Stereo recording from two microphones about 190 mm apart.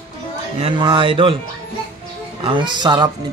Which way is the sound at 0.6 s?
25° right (ahead or behind).